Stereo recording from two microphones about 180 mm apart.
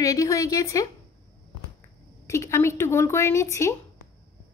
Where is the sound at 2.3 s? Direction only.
15° left (ahead or behind).